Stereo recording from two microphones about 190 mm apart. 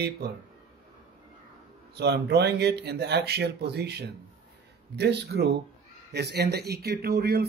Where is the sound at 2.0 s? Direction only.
60° right (ahead or behind).